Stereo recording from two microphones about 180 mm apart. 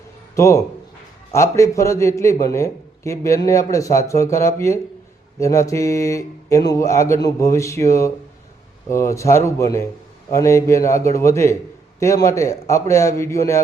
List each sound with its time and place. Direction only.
0.3 s a man's voice: 15° left (ahead or behind)